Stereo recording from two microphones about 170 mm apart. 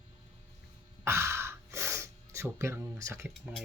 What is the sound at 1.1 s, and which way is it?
Gasp, 15° right (ahead or behind).